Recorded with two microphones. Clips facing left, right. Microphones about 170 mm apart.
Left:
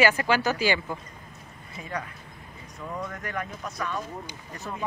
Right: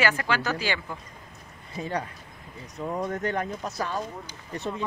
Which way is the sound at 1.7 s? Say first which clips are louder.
Right 4 dB; 30° right (ahead or behind).